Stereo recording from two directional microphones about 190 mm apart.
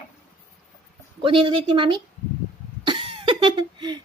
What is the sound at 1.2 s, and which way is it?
Speech, 25° right (ahead or behind).